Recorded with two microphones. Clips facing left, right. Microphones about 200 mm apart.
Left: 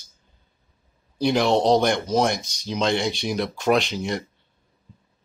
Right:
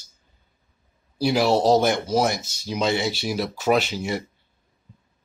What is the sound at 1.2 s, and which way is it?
Speech, 5° right (ahead or behind).